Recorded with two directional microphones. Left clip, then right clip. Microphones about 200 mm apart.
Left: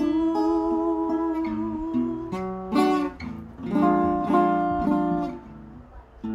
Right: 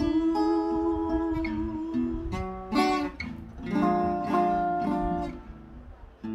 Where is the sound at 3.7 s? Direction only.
20° left (ahead or behind).